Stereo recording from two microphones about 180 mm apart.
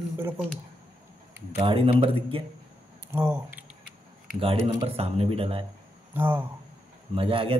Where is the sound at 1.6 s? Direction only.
30° right (ahead or behind).